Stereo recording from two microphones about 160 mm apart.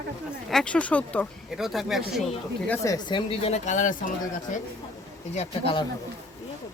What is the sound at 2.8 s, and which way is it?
Speech, 25° left (ahead or behind).